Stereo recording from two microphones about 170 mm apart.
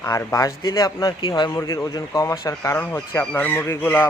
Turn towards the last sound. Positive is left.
turn(degrees=10)  # may be behind; listen again after turning